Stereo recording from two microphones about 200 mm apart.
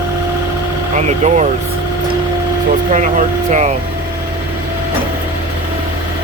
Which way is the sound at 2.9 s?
40° right (ahead or behind).